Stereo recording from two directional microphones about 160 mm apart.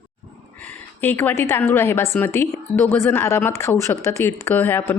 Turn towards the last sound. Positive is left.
turn(degrees=10)  # may be behind; listen again after turning